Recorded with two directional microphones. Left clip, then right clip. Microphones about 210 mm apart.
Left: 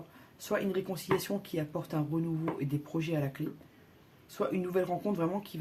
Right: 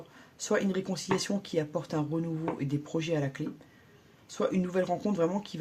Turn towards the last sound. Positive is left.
turn(degrees=-30)  # may be behind; listen again after turning